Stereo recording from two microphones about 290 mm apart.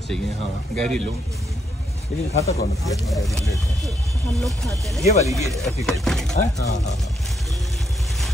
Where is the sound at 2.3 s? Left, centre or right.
Left.